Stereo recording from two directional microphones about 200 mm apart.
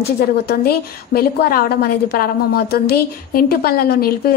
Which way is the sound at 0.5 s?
50° left (ahead or behind).